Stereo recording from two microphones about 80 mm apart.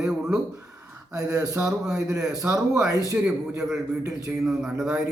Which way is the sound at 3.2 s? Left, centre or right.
Centre.